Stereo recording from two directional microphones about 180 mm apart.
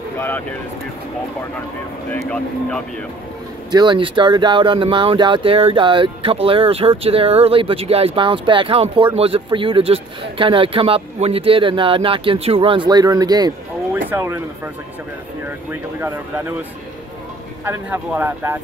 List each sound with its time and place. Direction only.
0.2 s speech: 10° left (ahead or behind)
2.1 s speech: 5° left (ahead or behind)
3.7 s speech: 25° right (ahead or behind)
13.9 s speech: 10° right (ahead or behind)
15.7 s speech: 10° right (ahead or behind)
17.6 s speech: 10° right (ahead or behind)